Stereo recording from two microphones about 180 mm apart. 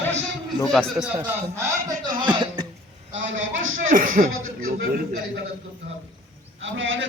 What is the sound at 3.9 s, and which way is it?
Speech, 50° right (ahead or behind).